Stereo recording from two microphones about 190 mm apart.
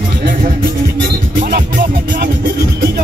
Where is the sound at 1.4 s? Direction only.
50° right (ahead or behind).